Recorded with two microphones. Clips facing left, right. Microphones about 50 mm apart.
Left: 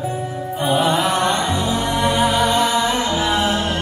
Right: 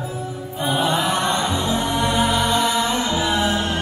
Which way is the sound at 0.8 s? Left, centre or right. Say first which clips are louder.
Left 1 dB; left.